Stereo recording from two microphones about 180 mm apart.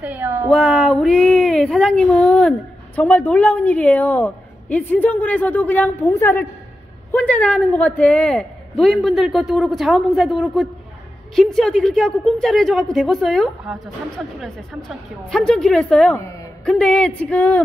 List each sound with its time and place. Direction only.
0.0 s speech: 10° right (ahead or behind)
0.5 s a woman's voice: 5° left (ahead or behind)
16.2 s a woman's voice: 15° left (ahead or behind)
16.6 s a woman's voice: 5° left (ahead or behind)